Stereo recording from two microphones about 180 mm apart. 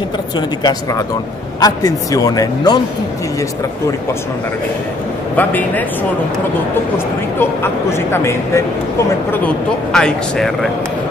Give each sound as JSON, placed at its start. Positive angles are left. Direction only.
{"t": 0.4, "sound": "speech", "side_deg": 25}
{"t": 5.3, "sound": "speech", "side_deg": 10}
{"t": 7.3, "sound": "speech", "side_deg": 15}
{"t": 9.9, "sound": "speech", "side_deg": 5}